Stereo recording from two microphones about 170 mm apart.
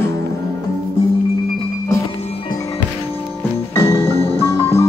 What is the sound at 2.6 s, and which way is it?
Music, 20° left (ahead or behind).